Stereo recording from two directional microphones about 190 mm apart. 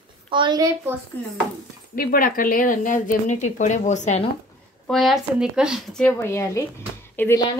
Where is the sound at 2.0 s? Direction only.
50° left (ahead or behind).